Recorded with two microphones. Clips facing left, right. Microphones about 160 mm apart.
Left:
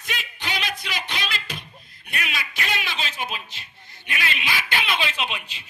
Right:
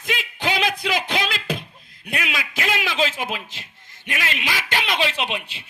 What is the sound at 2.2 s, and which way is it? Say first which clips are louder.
Speech: right 4 dB; 90° right.